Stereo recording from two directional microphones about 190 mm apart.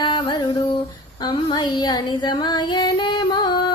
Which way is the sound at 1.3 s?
25° left (ahead or behind).